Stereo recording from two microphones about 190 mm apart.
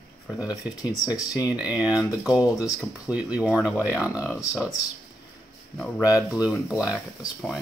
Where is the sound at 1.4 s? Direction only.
5° right (ahead or behind).